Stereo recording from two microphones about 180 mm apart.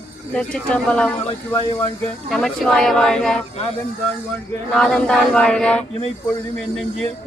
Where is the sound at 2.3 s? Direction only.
5° left (ahead or behind).